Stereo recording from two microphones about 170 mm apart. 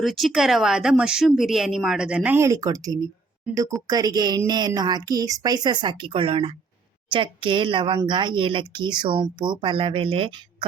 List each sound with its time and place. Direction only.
0.0 s a woman's voice: centre (ahead or behind); by 10.7 s 30° right (ahead or behind)